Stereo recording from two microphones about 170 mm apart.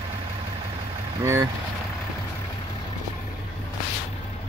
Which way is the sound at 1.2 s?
15° right (ahead or behind).